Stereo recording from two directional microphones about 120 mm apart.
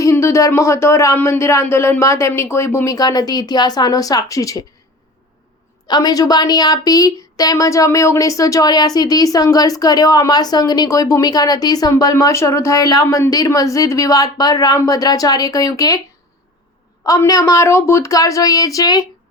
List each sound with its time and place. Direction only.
0.0 s speech: 25° left (ahead or behind)
5.9 s a woman's voice: 35° left (ahead or behind)
17.0 s speech: 30° left (ahead or behind)